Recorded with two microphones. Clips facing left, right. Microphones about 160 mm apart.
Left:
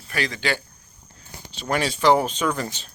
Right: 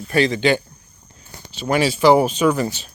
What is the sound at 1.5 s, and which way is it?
Speech, 5° right (ahead or behind).